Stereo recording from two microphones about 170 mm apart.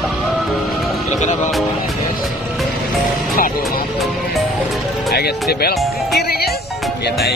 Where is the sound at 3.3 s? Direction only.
60° left (ahead or behind).